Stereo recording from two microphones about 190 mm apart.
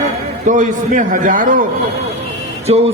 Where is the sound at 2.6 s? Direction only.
30° right (ahead or behind).